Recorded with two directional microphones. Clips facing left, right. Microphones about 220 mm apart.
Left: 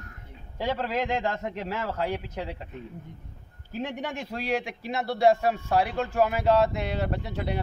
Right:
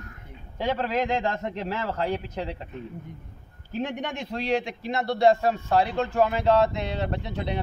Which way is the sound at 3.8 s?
5° left (ahead or behind).